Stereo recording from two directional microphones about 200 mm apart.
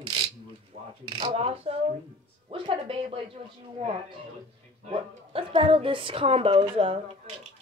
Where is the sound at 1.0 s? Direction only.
25° right (ahead or behind).